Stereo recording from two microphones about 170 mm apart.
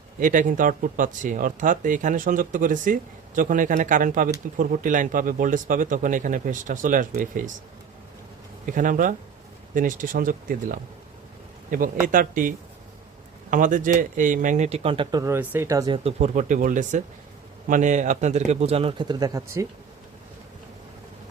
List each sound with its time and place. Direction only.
0.2 s speech: 50° right (ahead or behind)
8.6 s speech: 50° right (ahead or behind); by 15.2 s 30° right (ahead or behind)
15.2 s speech: 15° right (ahead or behind)
16.0 s speech: 45° right (ahead or behind); by 19.6 s 20° right (ahead or behind)